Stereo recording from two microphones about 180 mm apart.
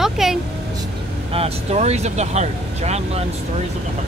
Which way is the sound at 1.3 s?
35° right (ahead or behind).